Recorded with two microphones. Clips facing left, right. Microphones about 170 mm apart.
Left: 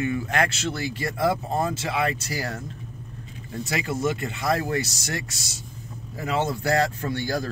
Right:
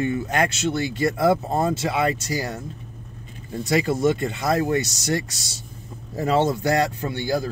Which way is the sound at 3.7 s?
25° right (ahead or behind).